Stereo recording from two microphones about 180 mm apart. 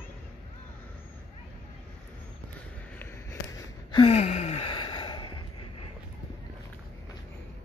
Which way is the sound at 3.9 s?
30° left (ahead or behind).